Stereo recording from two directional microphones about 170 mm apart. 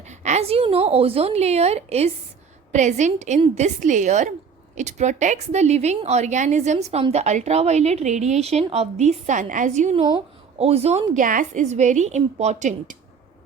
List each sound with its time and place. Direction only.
0.1 s a woman's voice: 45° right (ahead or behind)
9.9 s speech: 30° right (ahead or behind)
11.1 s a woman's voice: 50° right (ahead or behind)